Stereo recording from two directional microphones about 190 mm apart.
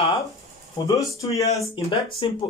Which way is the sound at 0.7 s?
20° left (ahead or behind).